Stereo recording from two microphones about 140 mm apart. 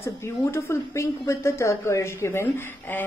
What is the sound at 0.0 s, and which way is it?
A woman's voice, 20° left (ahead or behind).